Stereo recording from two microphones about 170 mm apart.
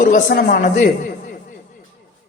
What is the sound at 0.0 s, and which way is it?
Speech, 55° left (ahead or behind).